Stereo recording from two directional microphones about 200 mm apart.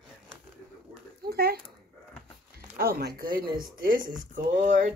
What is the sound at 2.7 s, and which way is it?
Speech, 45° right (ahead or behind).